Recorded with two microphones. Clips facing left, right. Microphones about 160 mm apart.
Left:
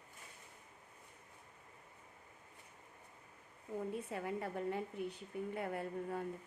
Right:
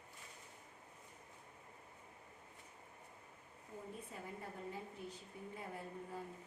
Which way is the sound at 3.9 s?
75° left (ahead or behind).